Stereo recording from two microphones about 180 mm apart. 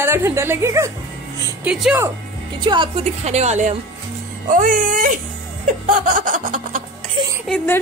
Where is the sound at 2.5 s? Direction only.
25° right (ahead or behind); by 5.1 s 50° right (ahead or behind).